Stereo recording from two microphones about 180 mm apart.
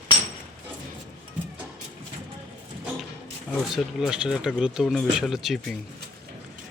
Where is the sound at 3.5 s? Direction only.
Centre (ahead or behind).